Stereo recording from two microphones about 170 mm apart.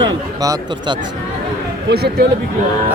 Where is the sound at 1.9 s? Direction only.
70° right (ahead or behind).